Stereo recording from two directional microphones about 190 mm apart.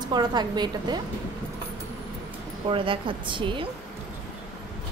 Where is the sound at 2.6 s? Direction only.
25° right (ahead or behind).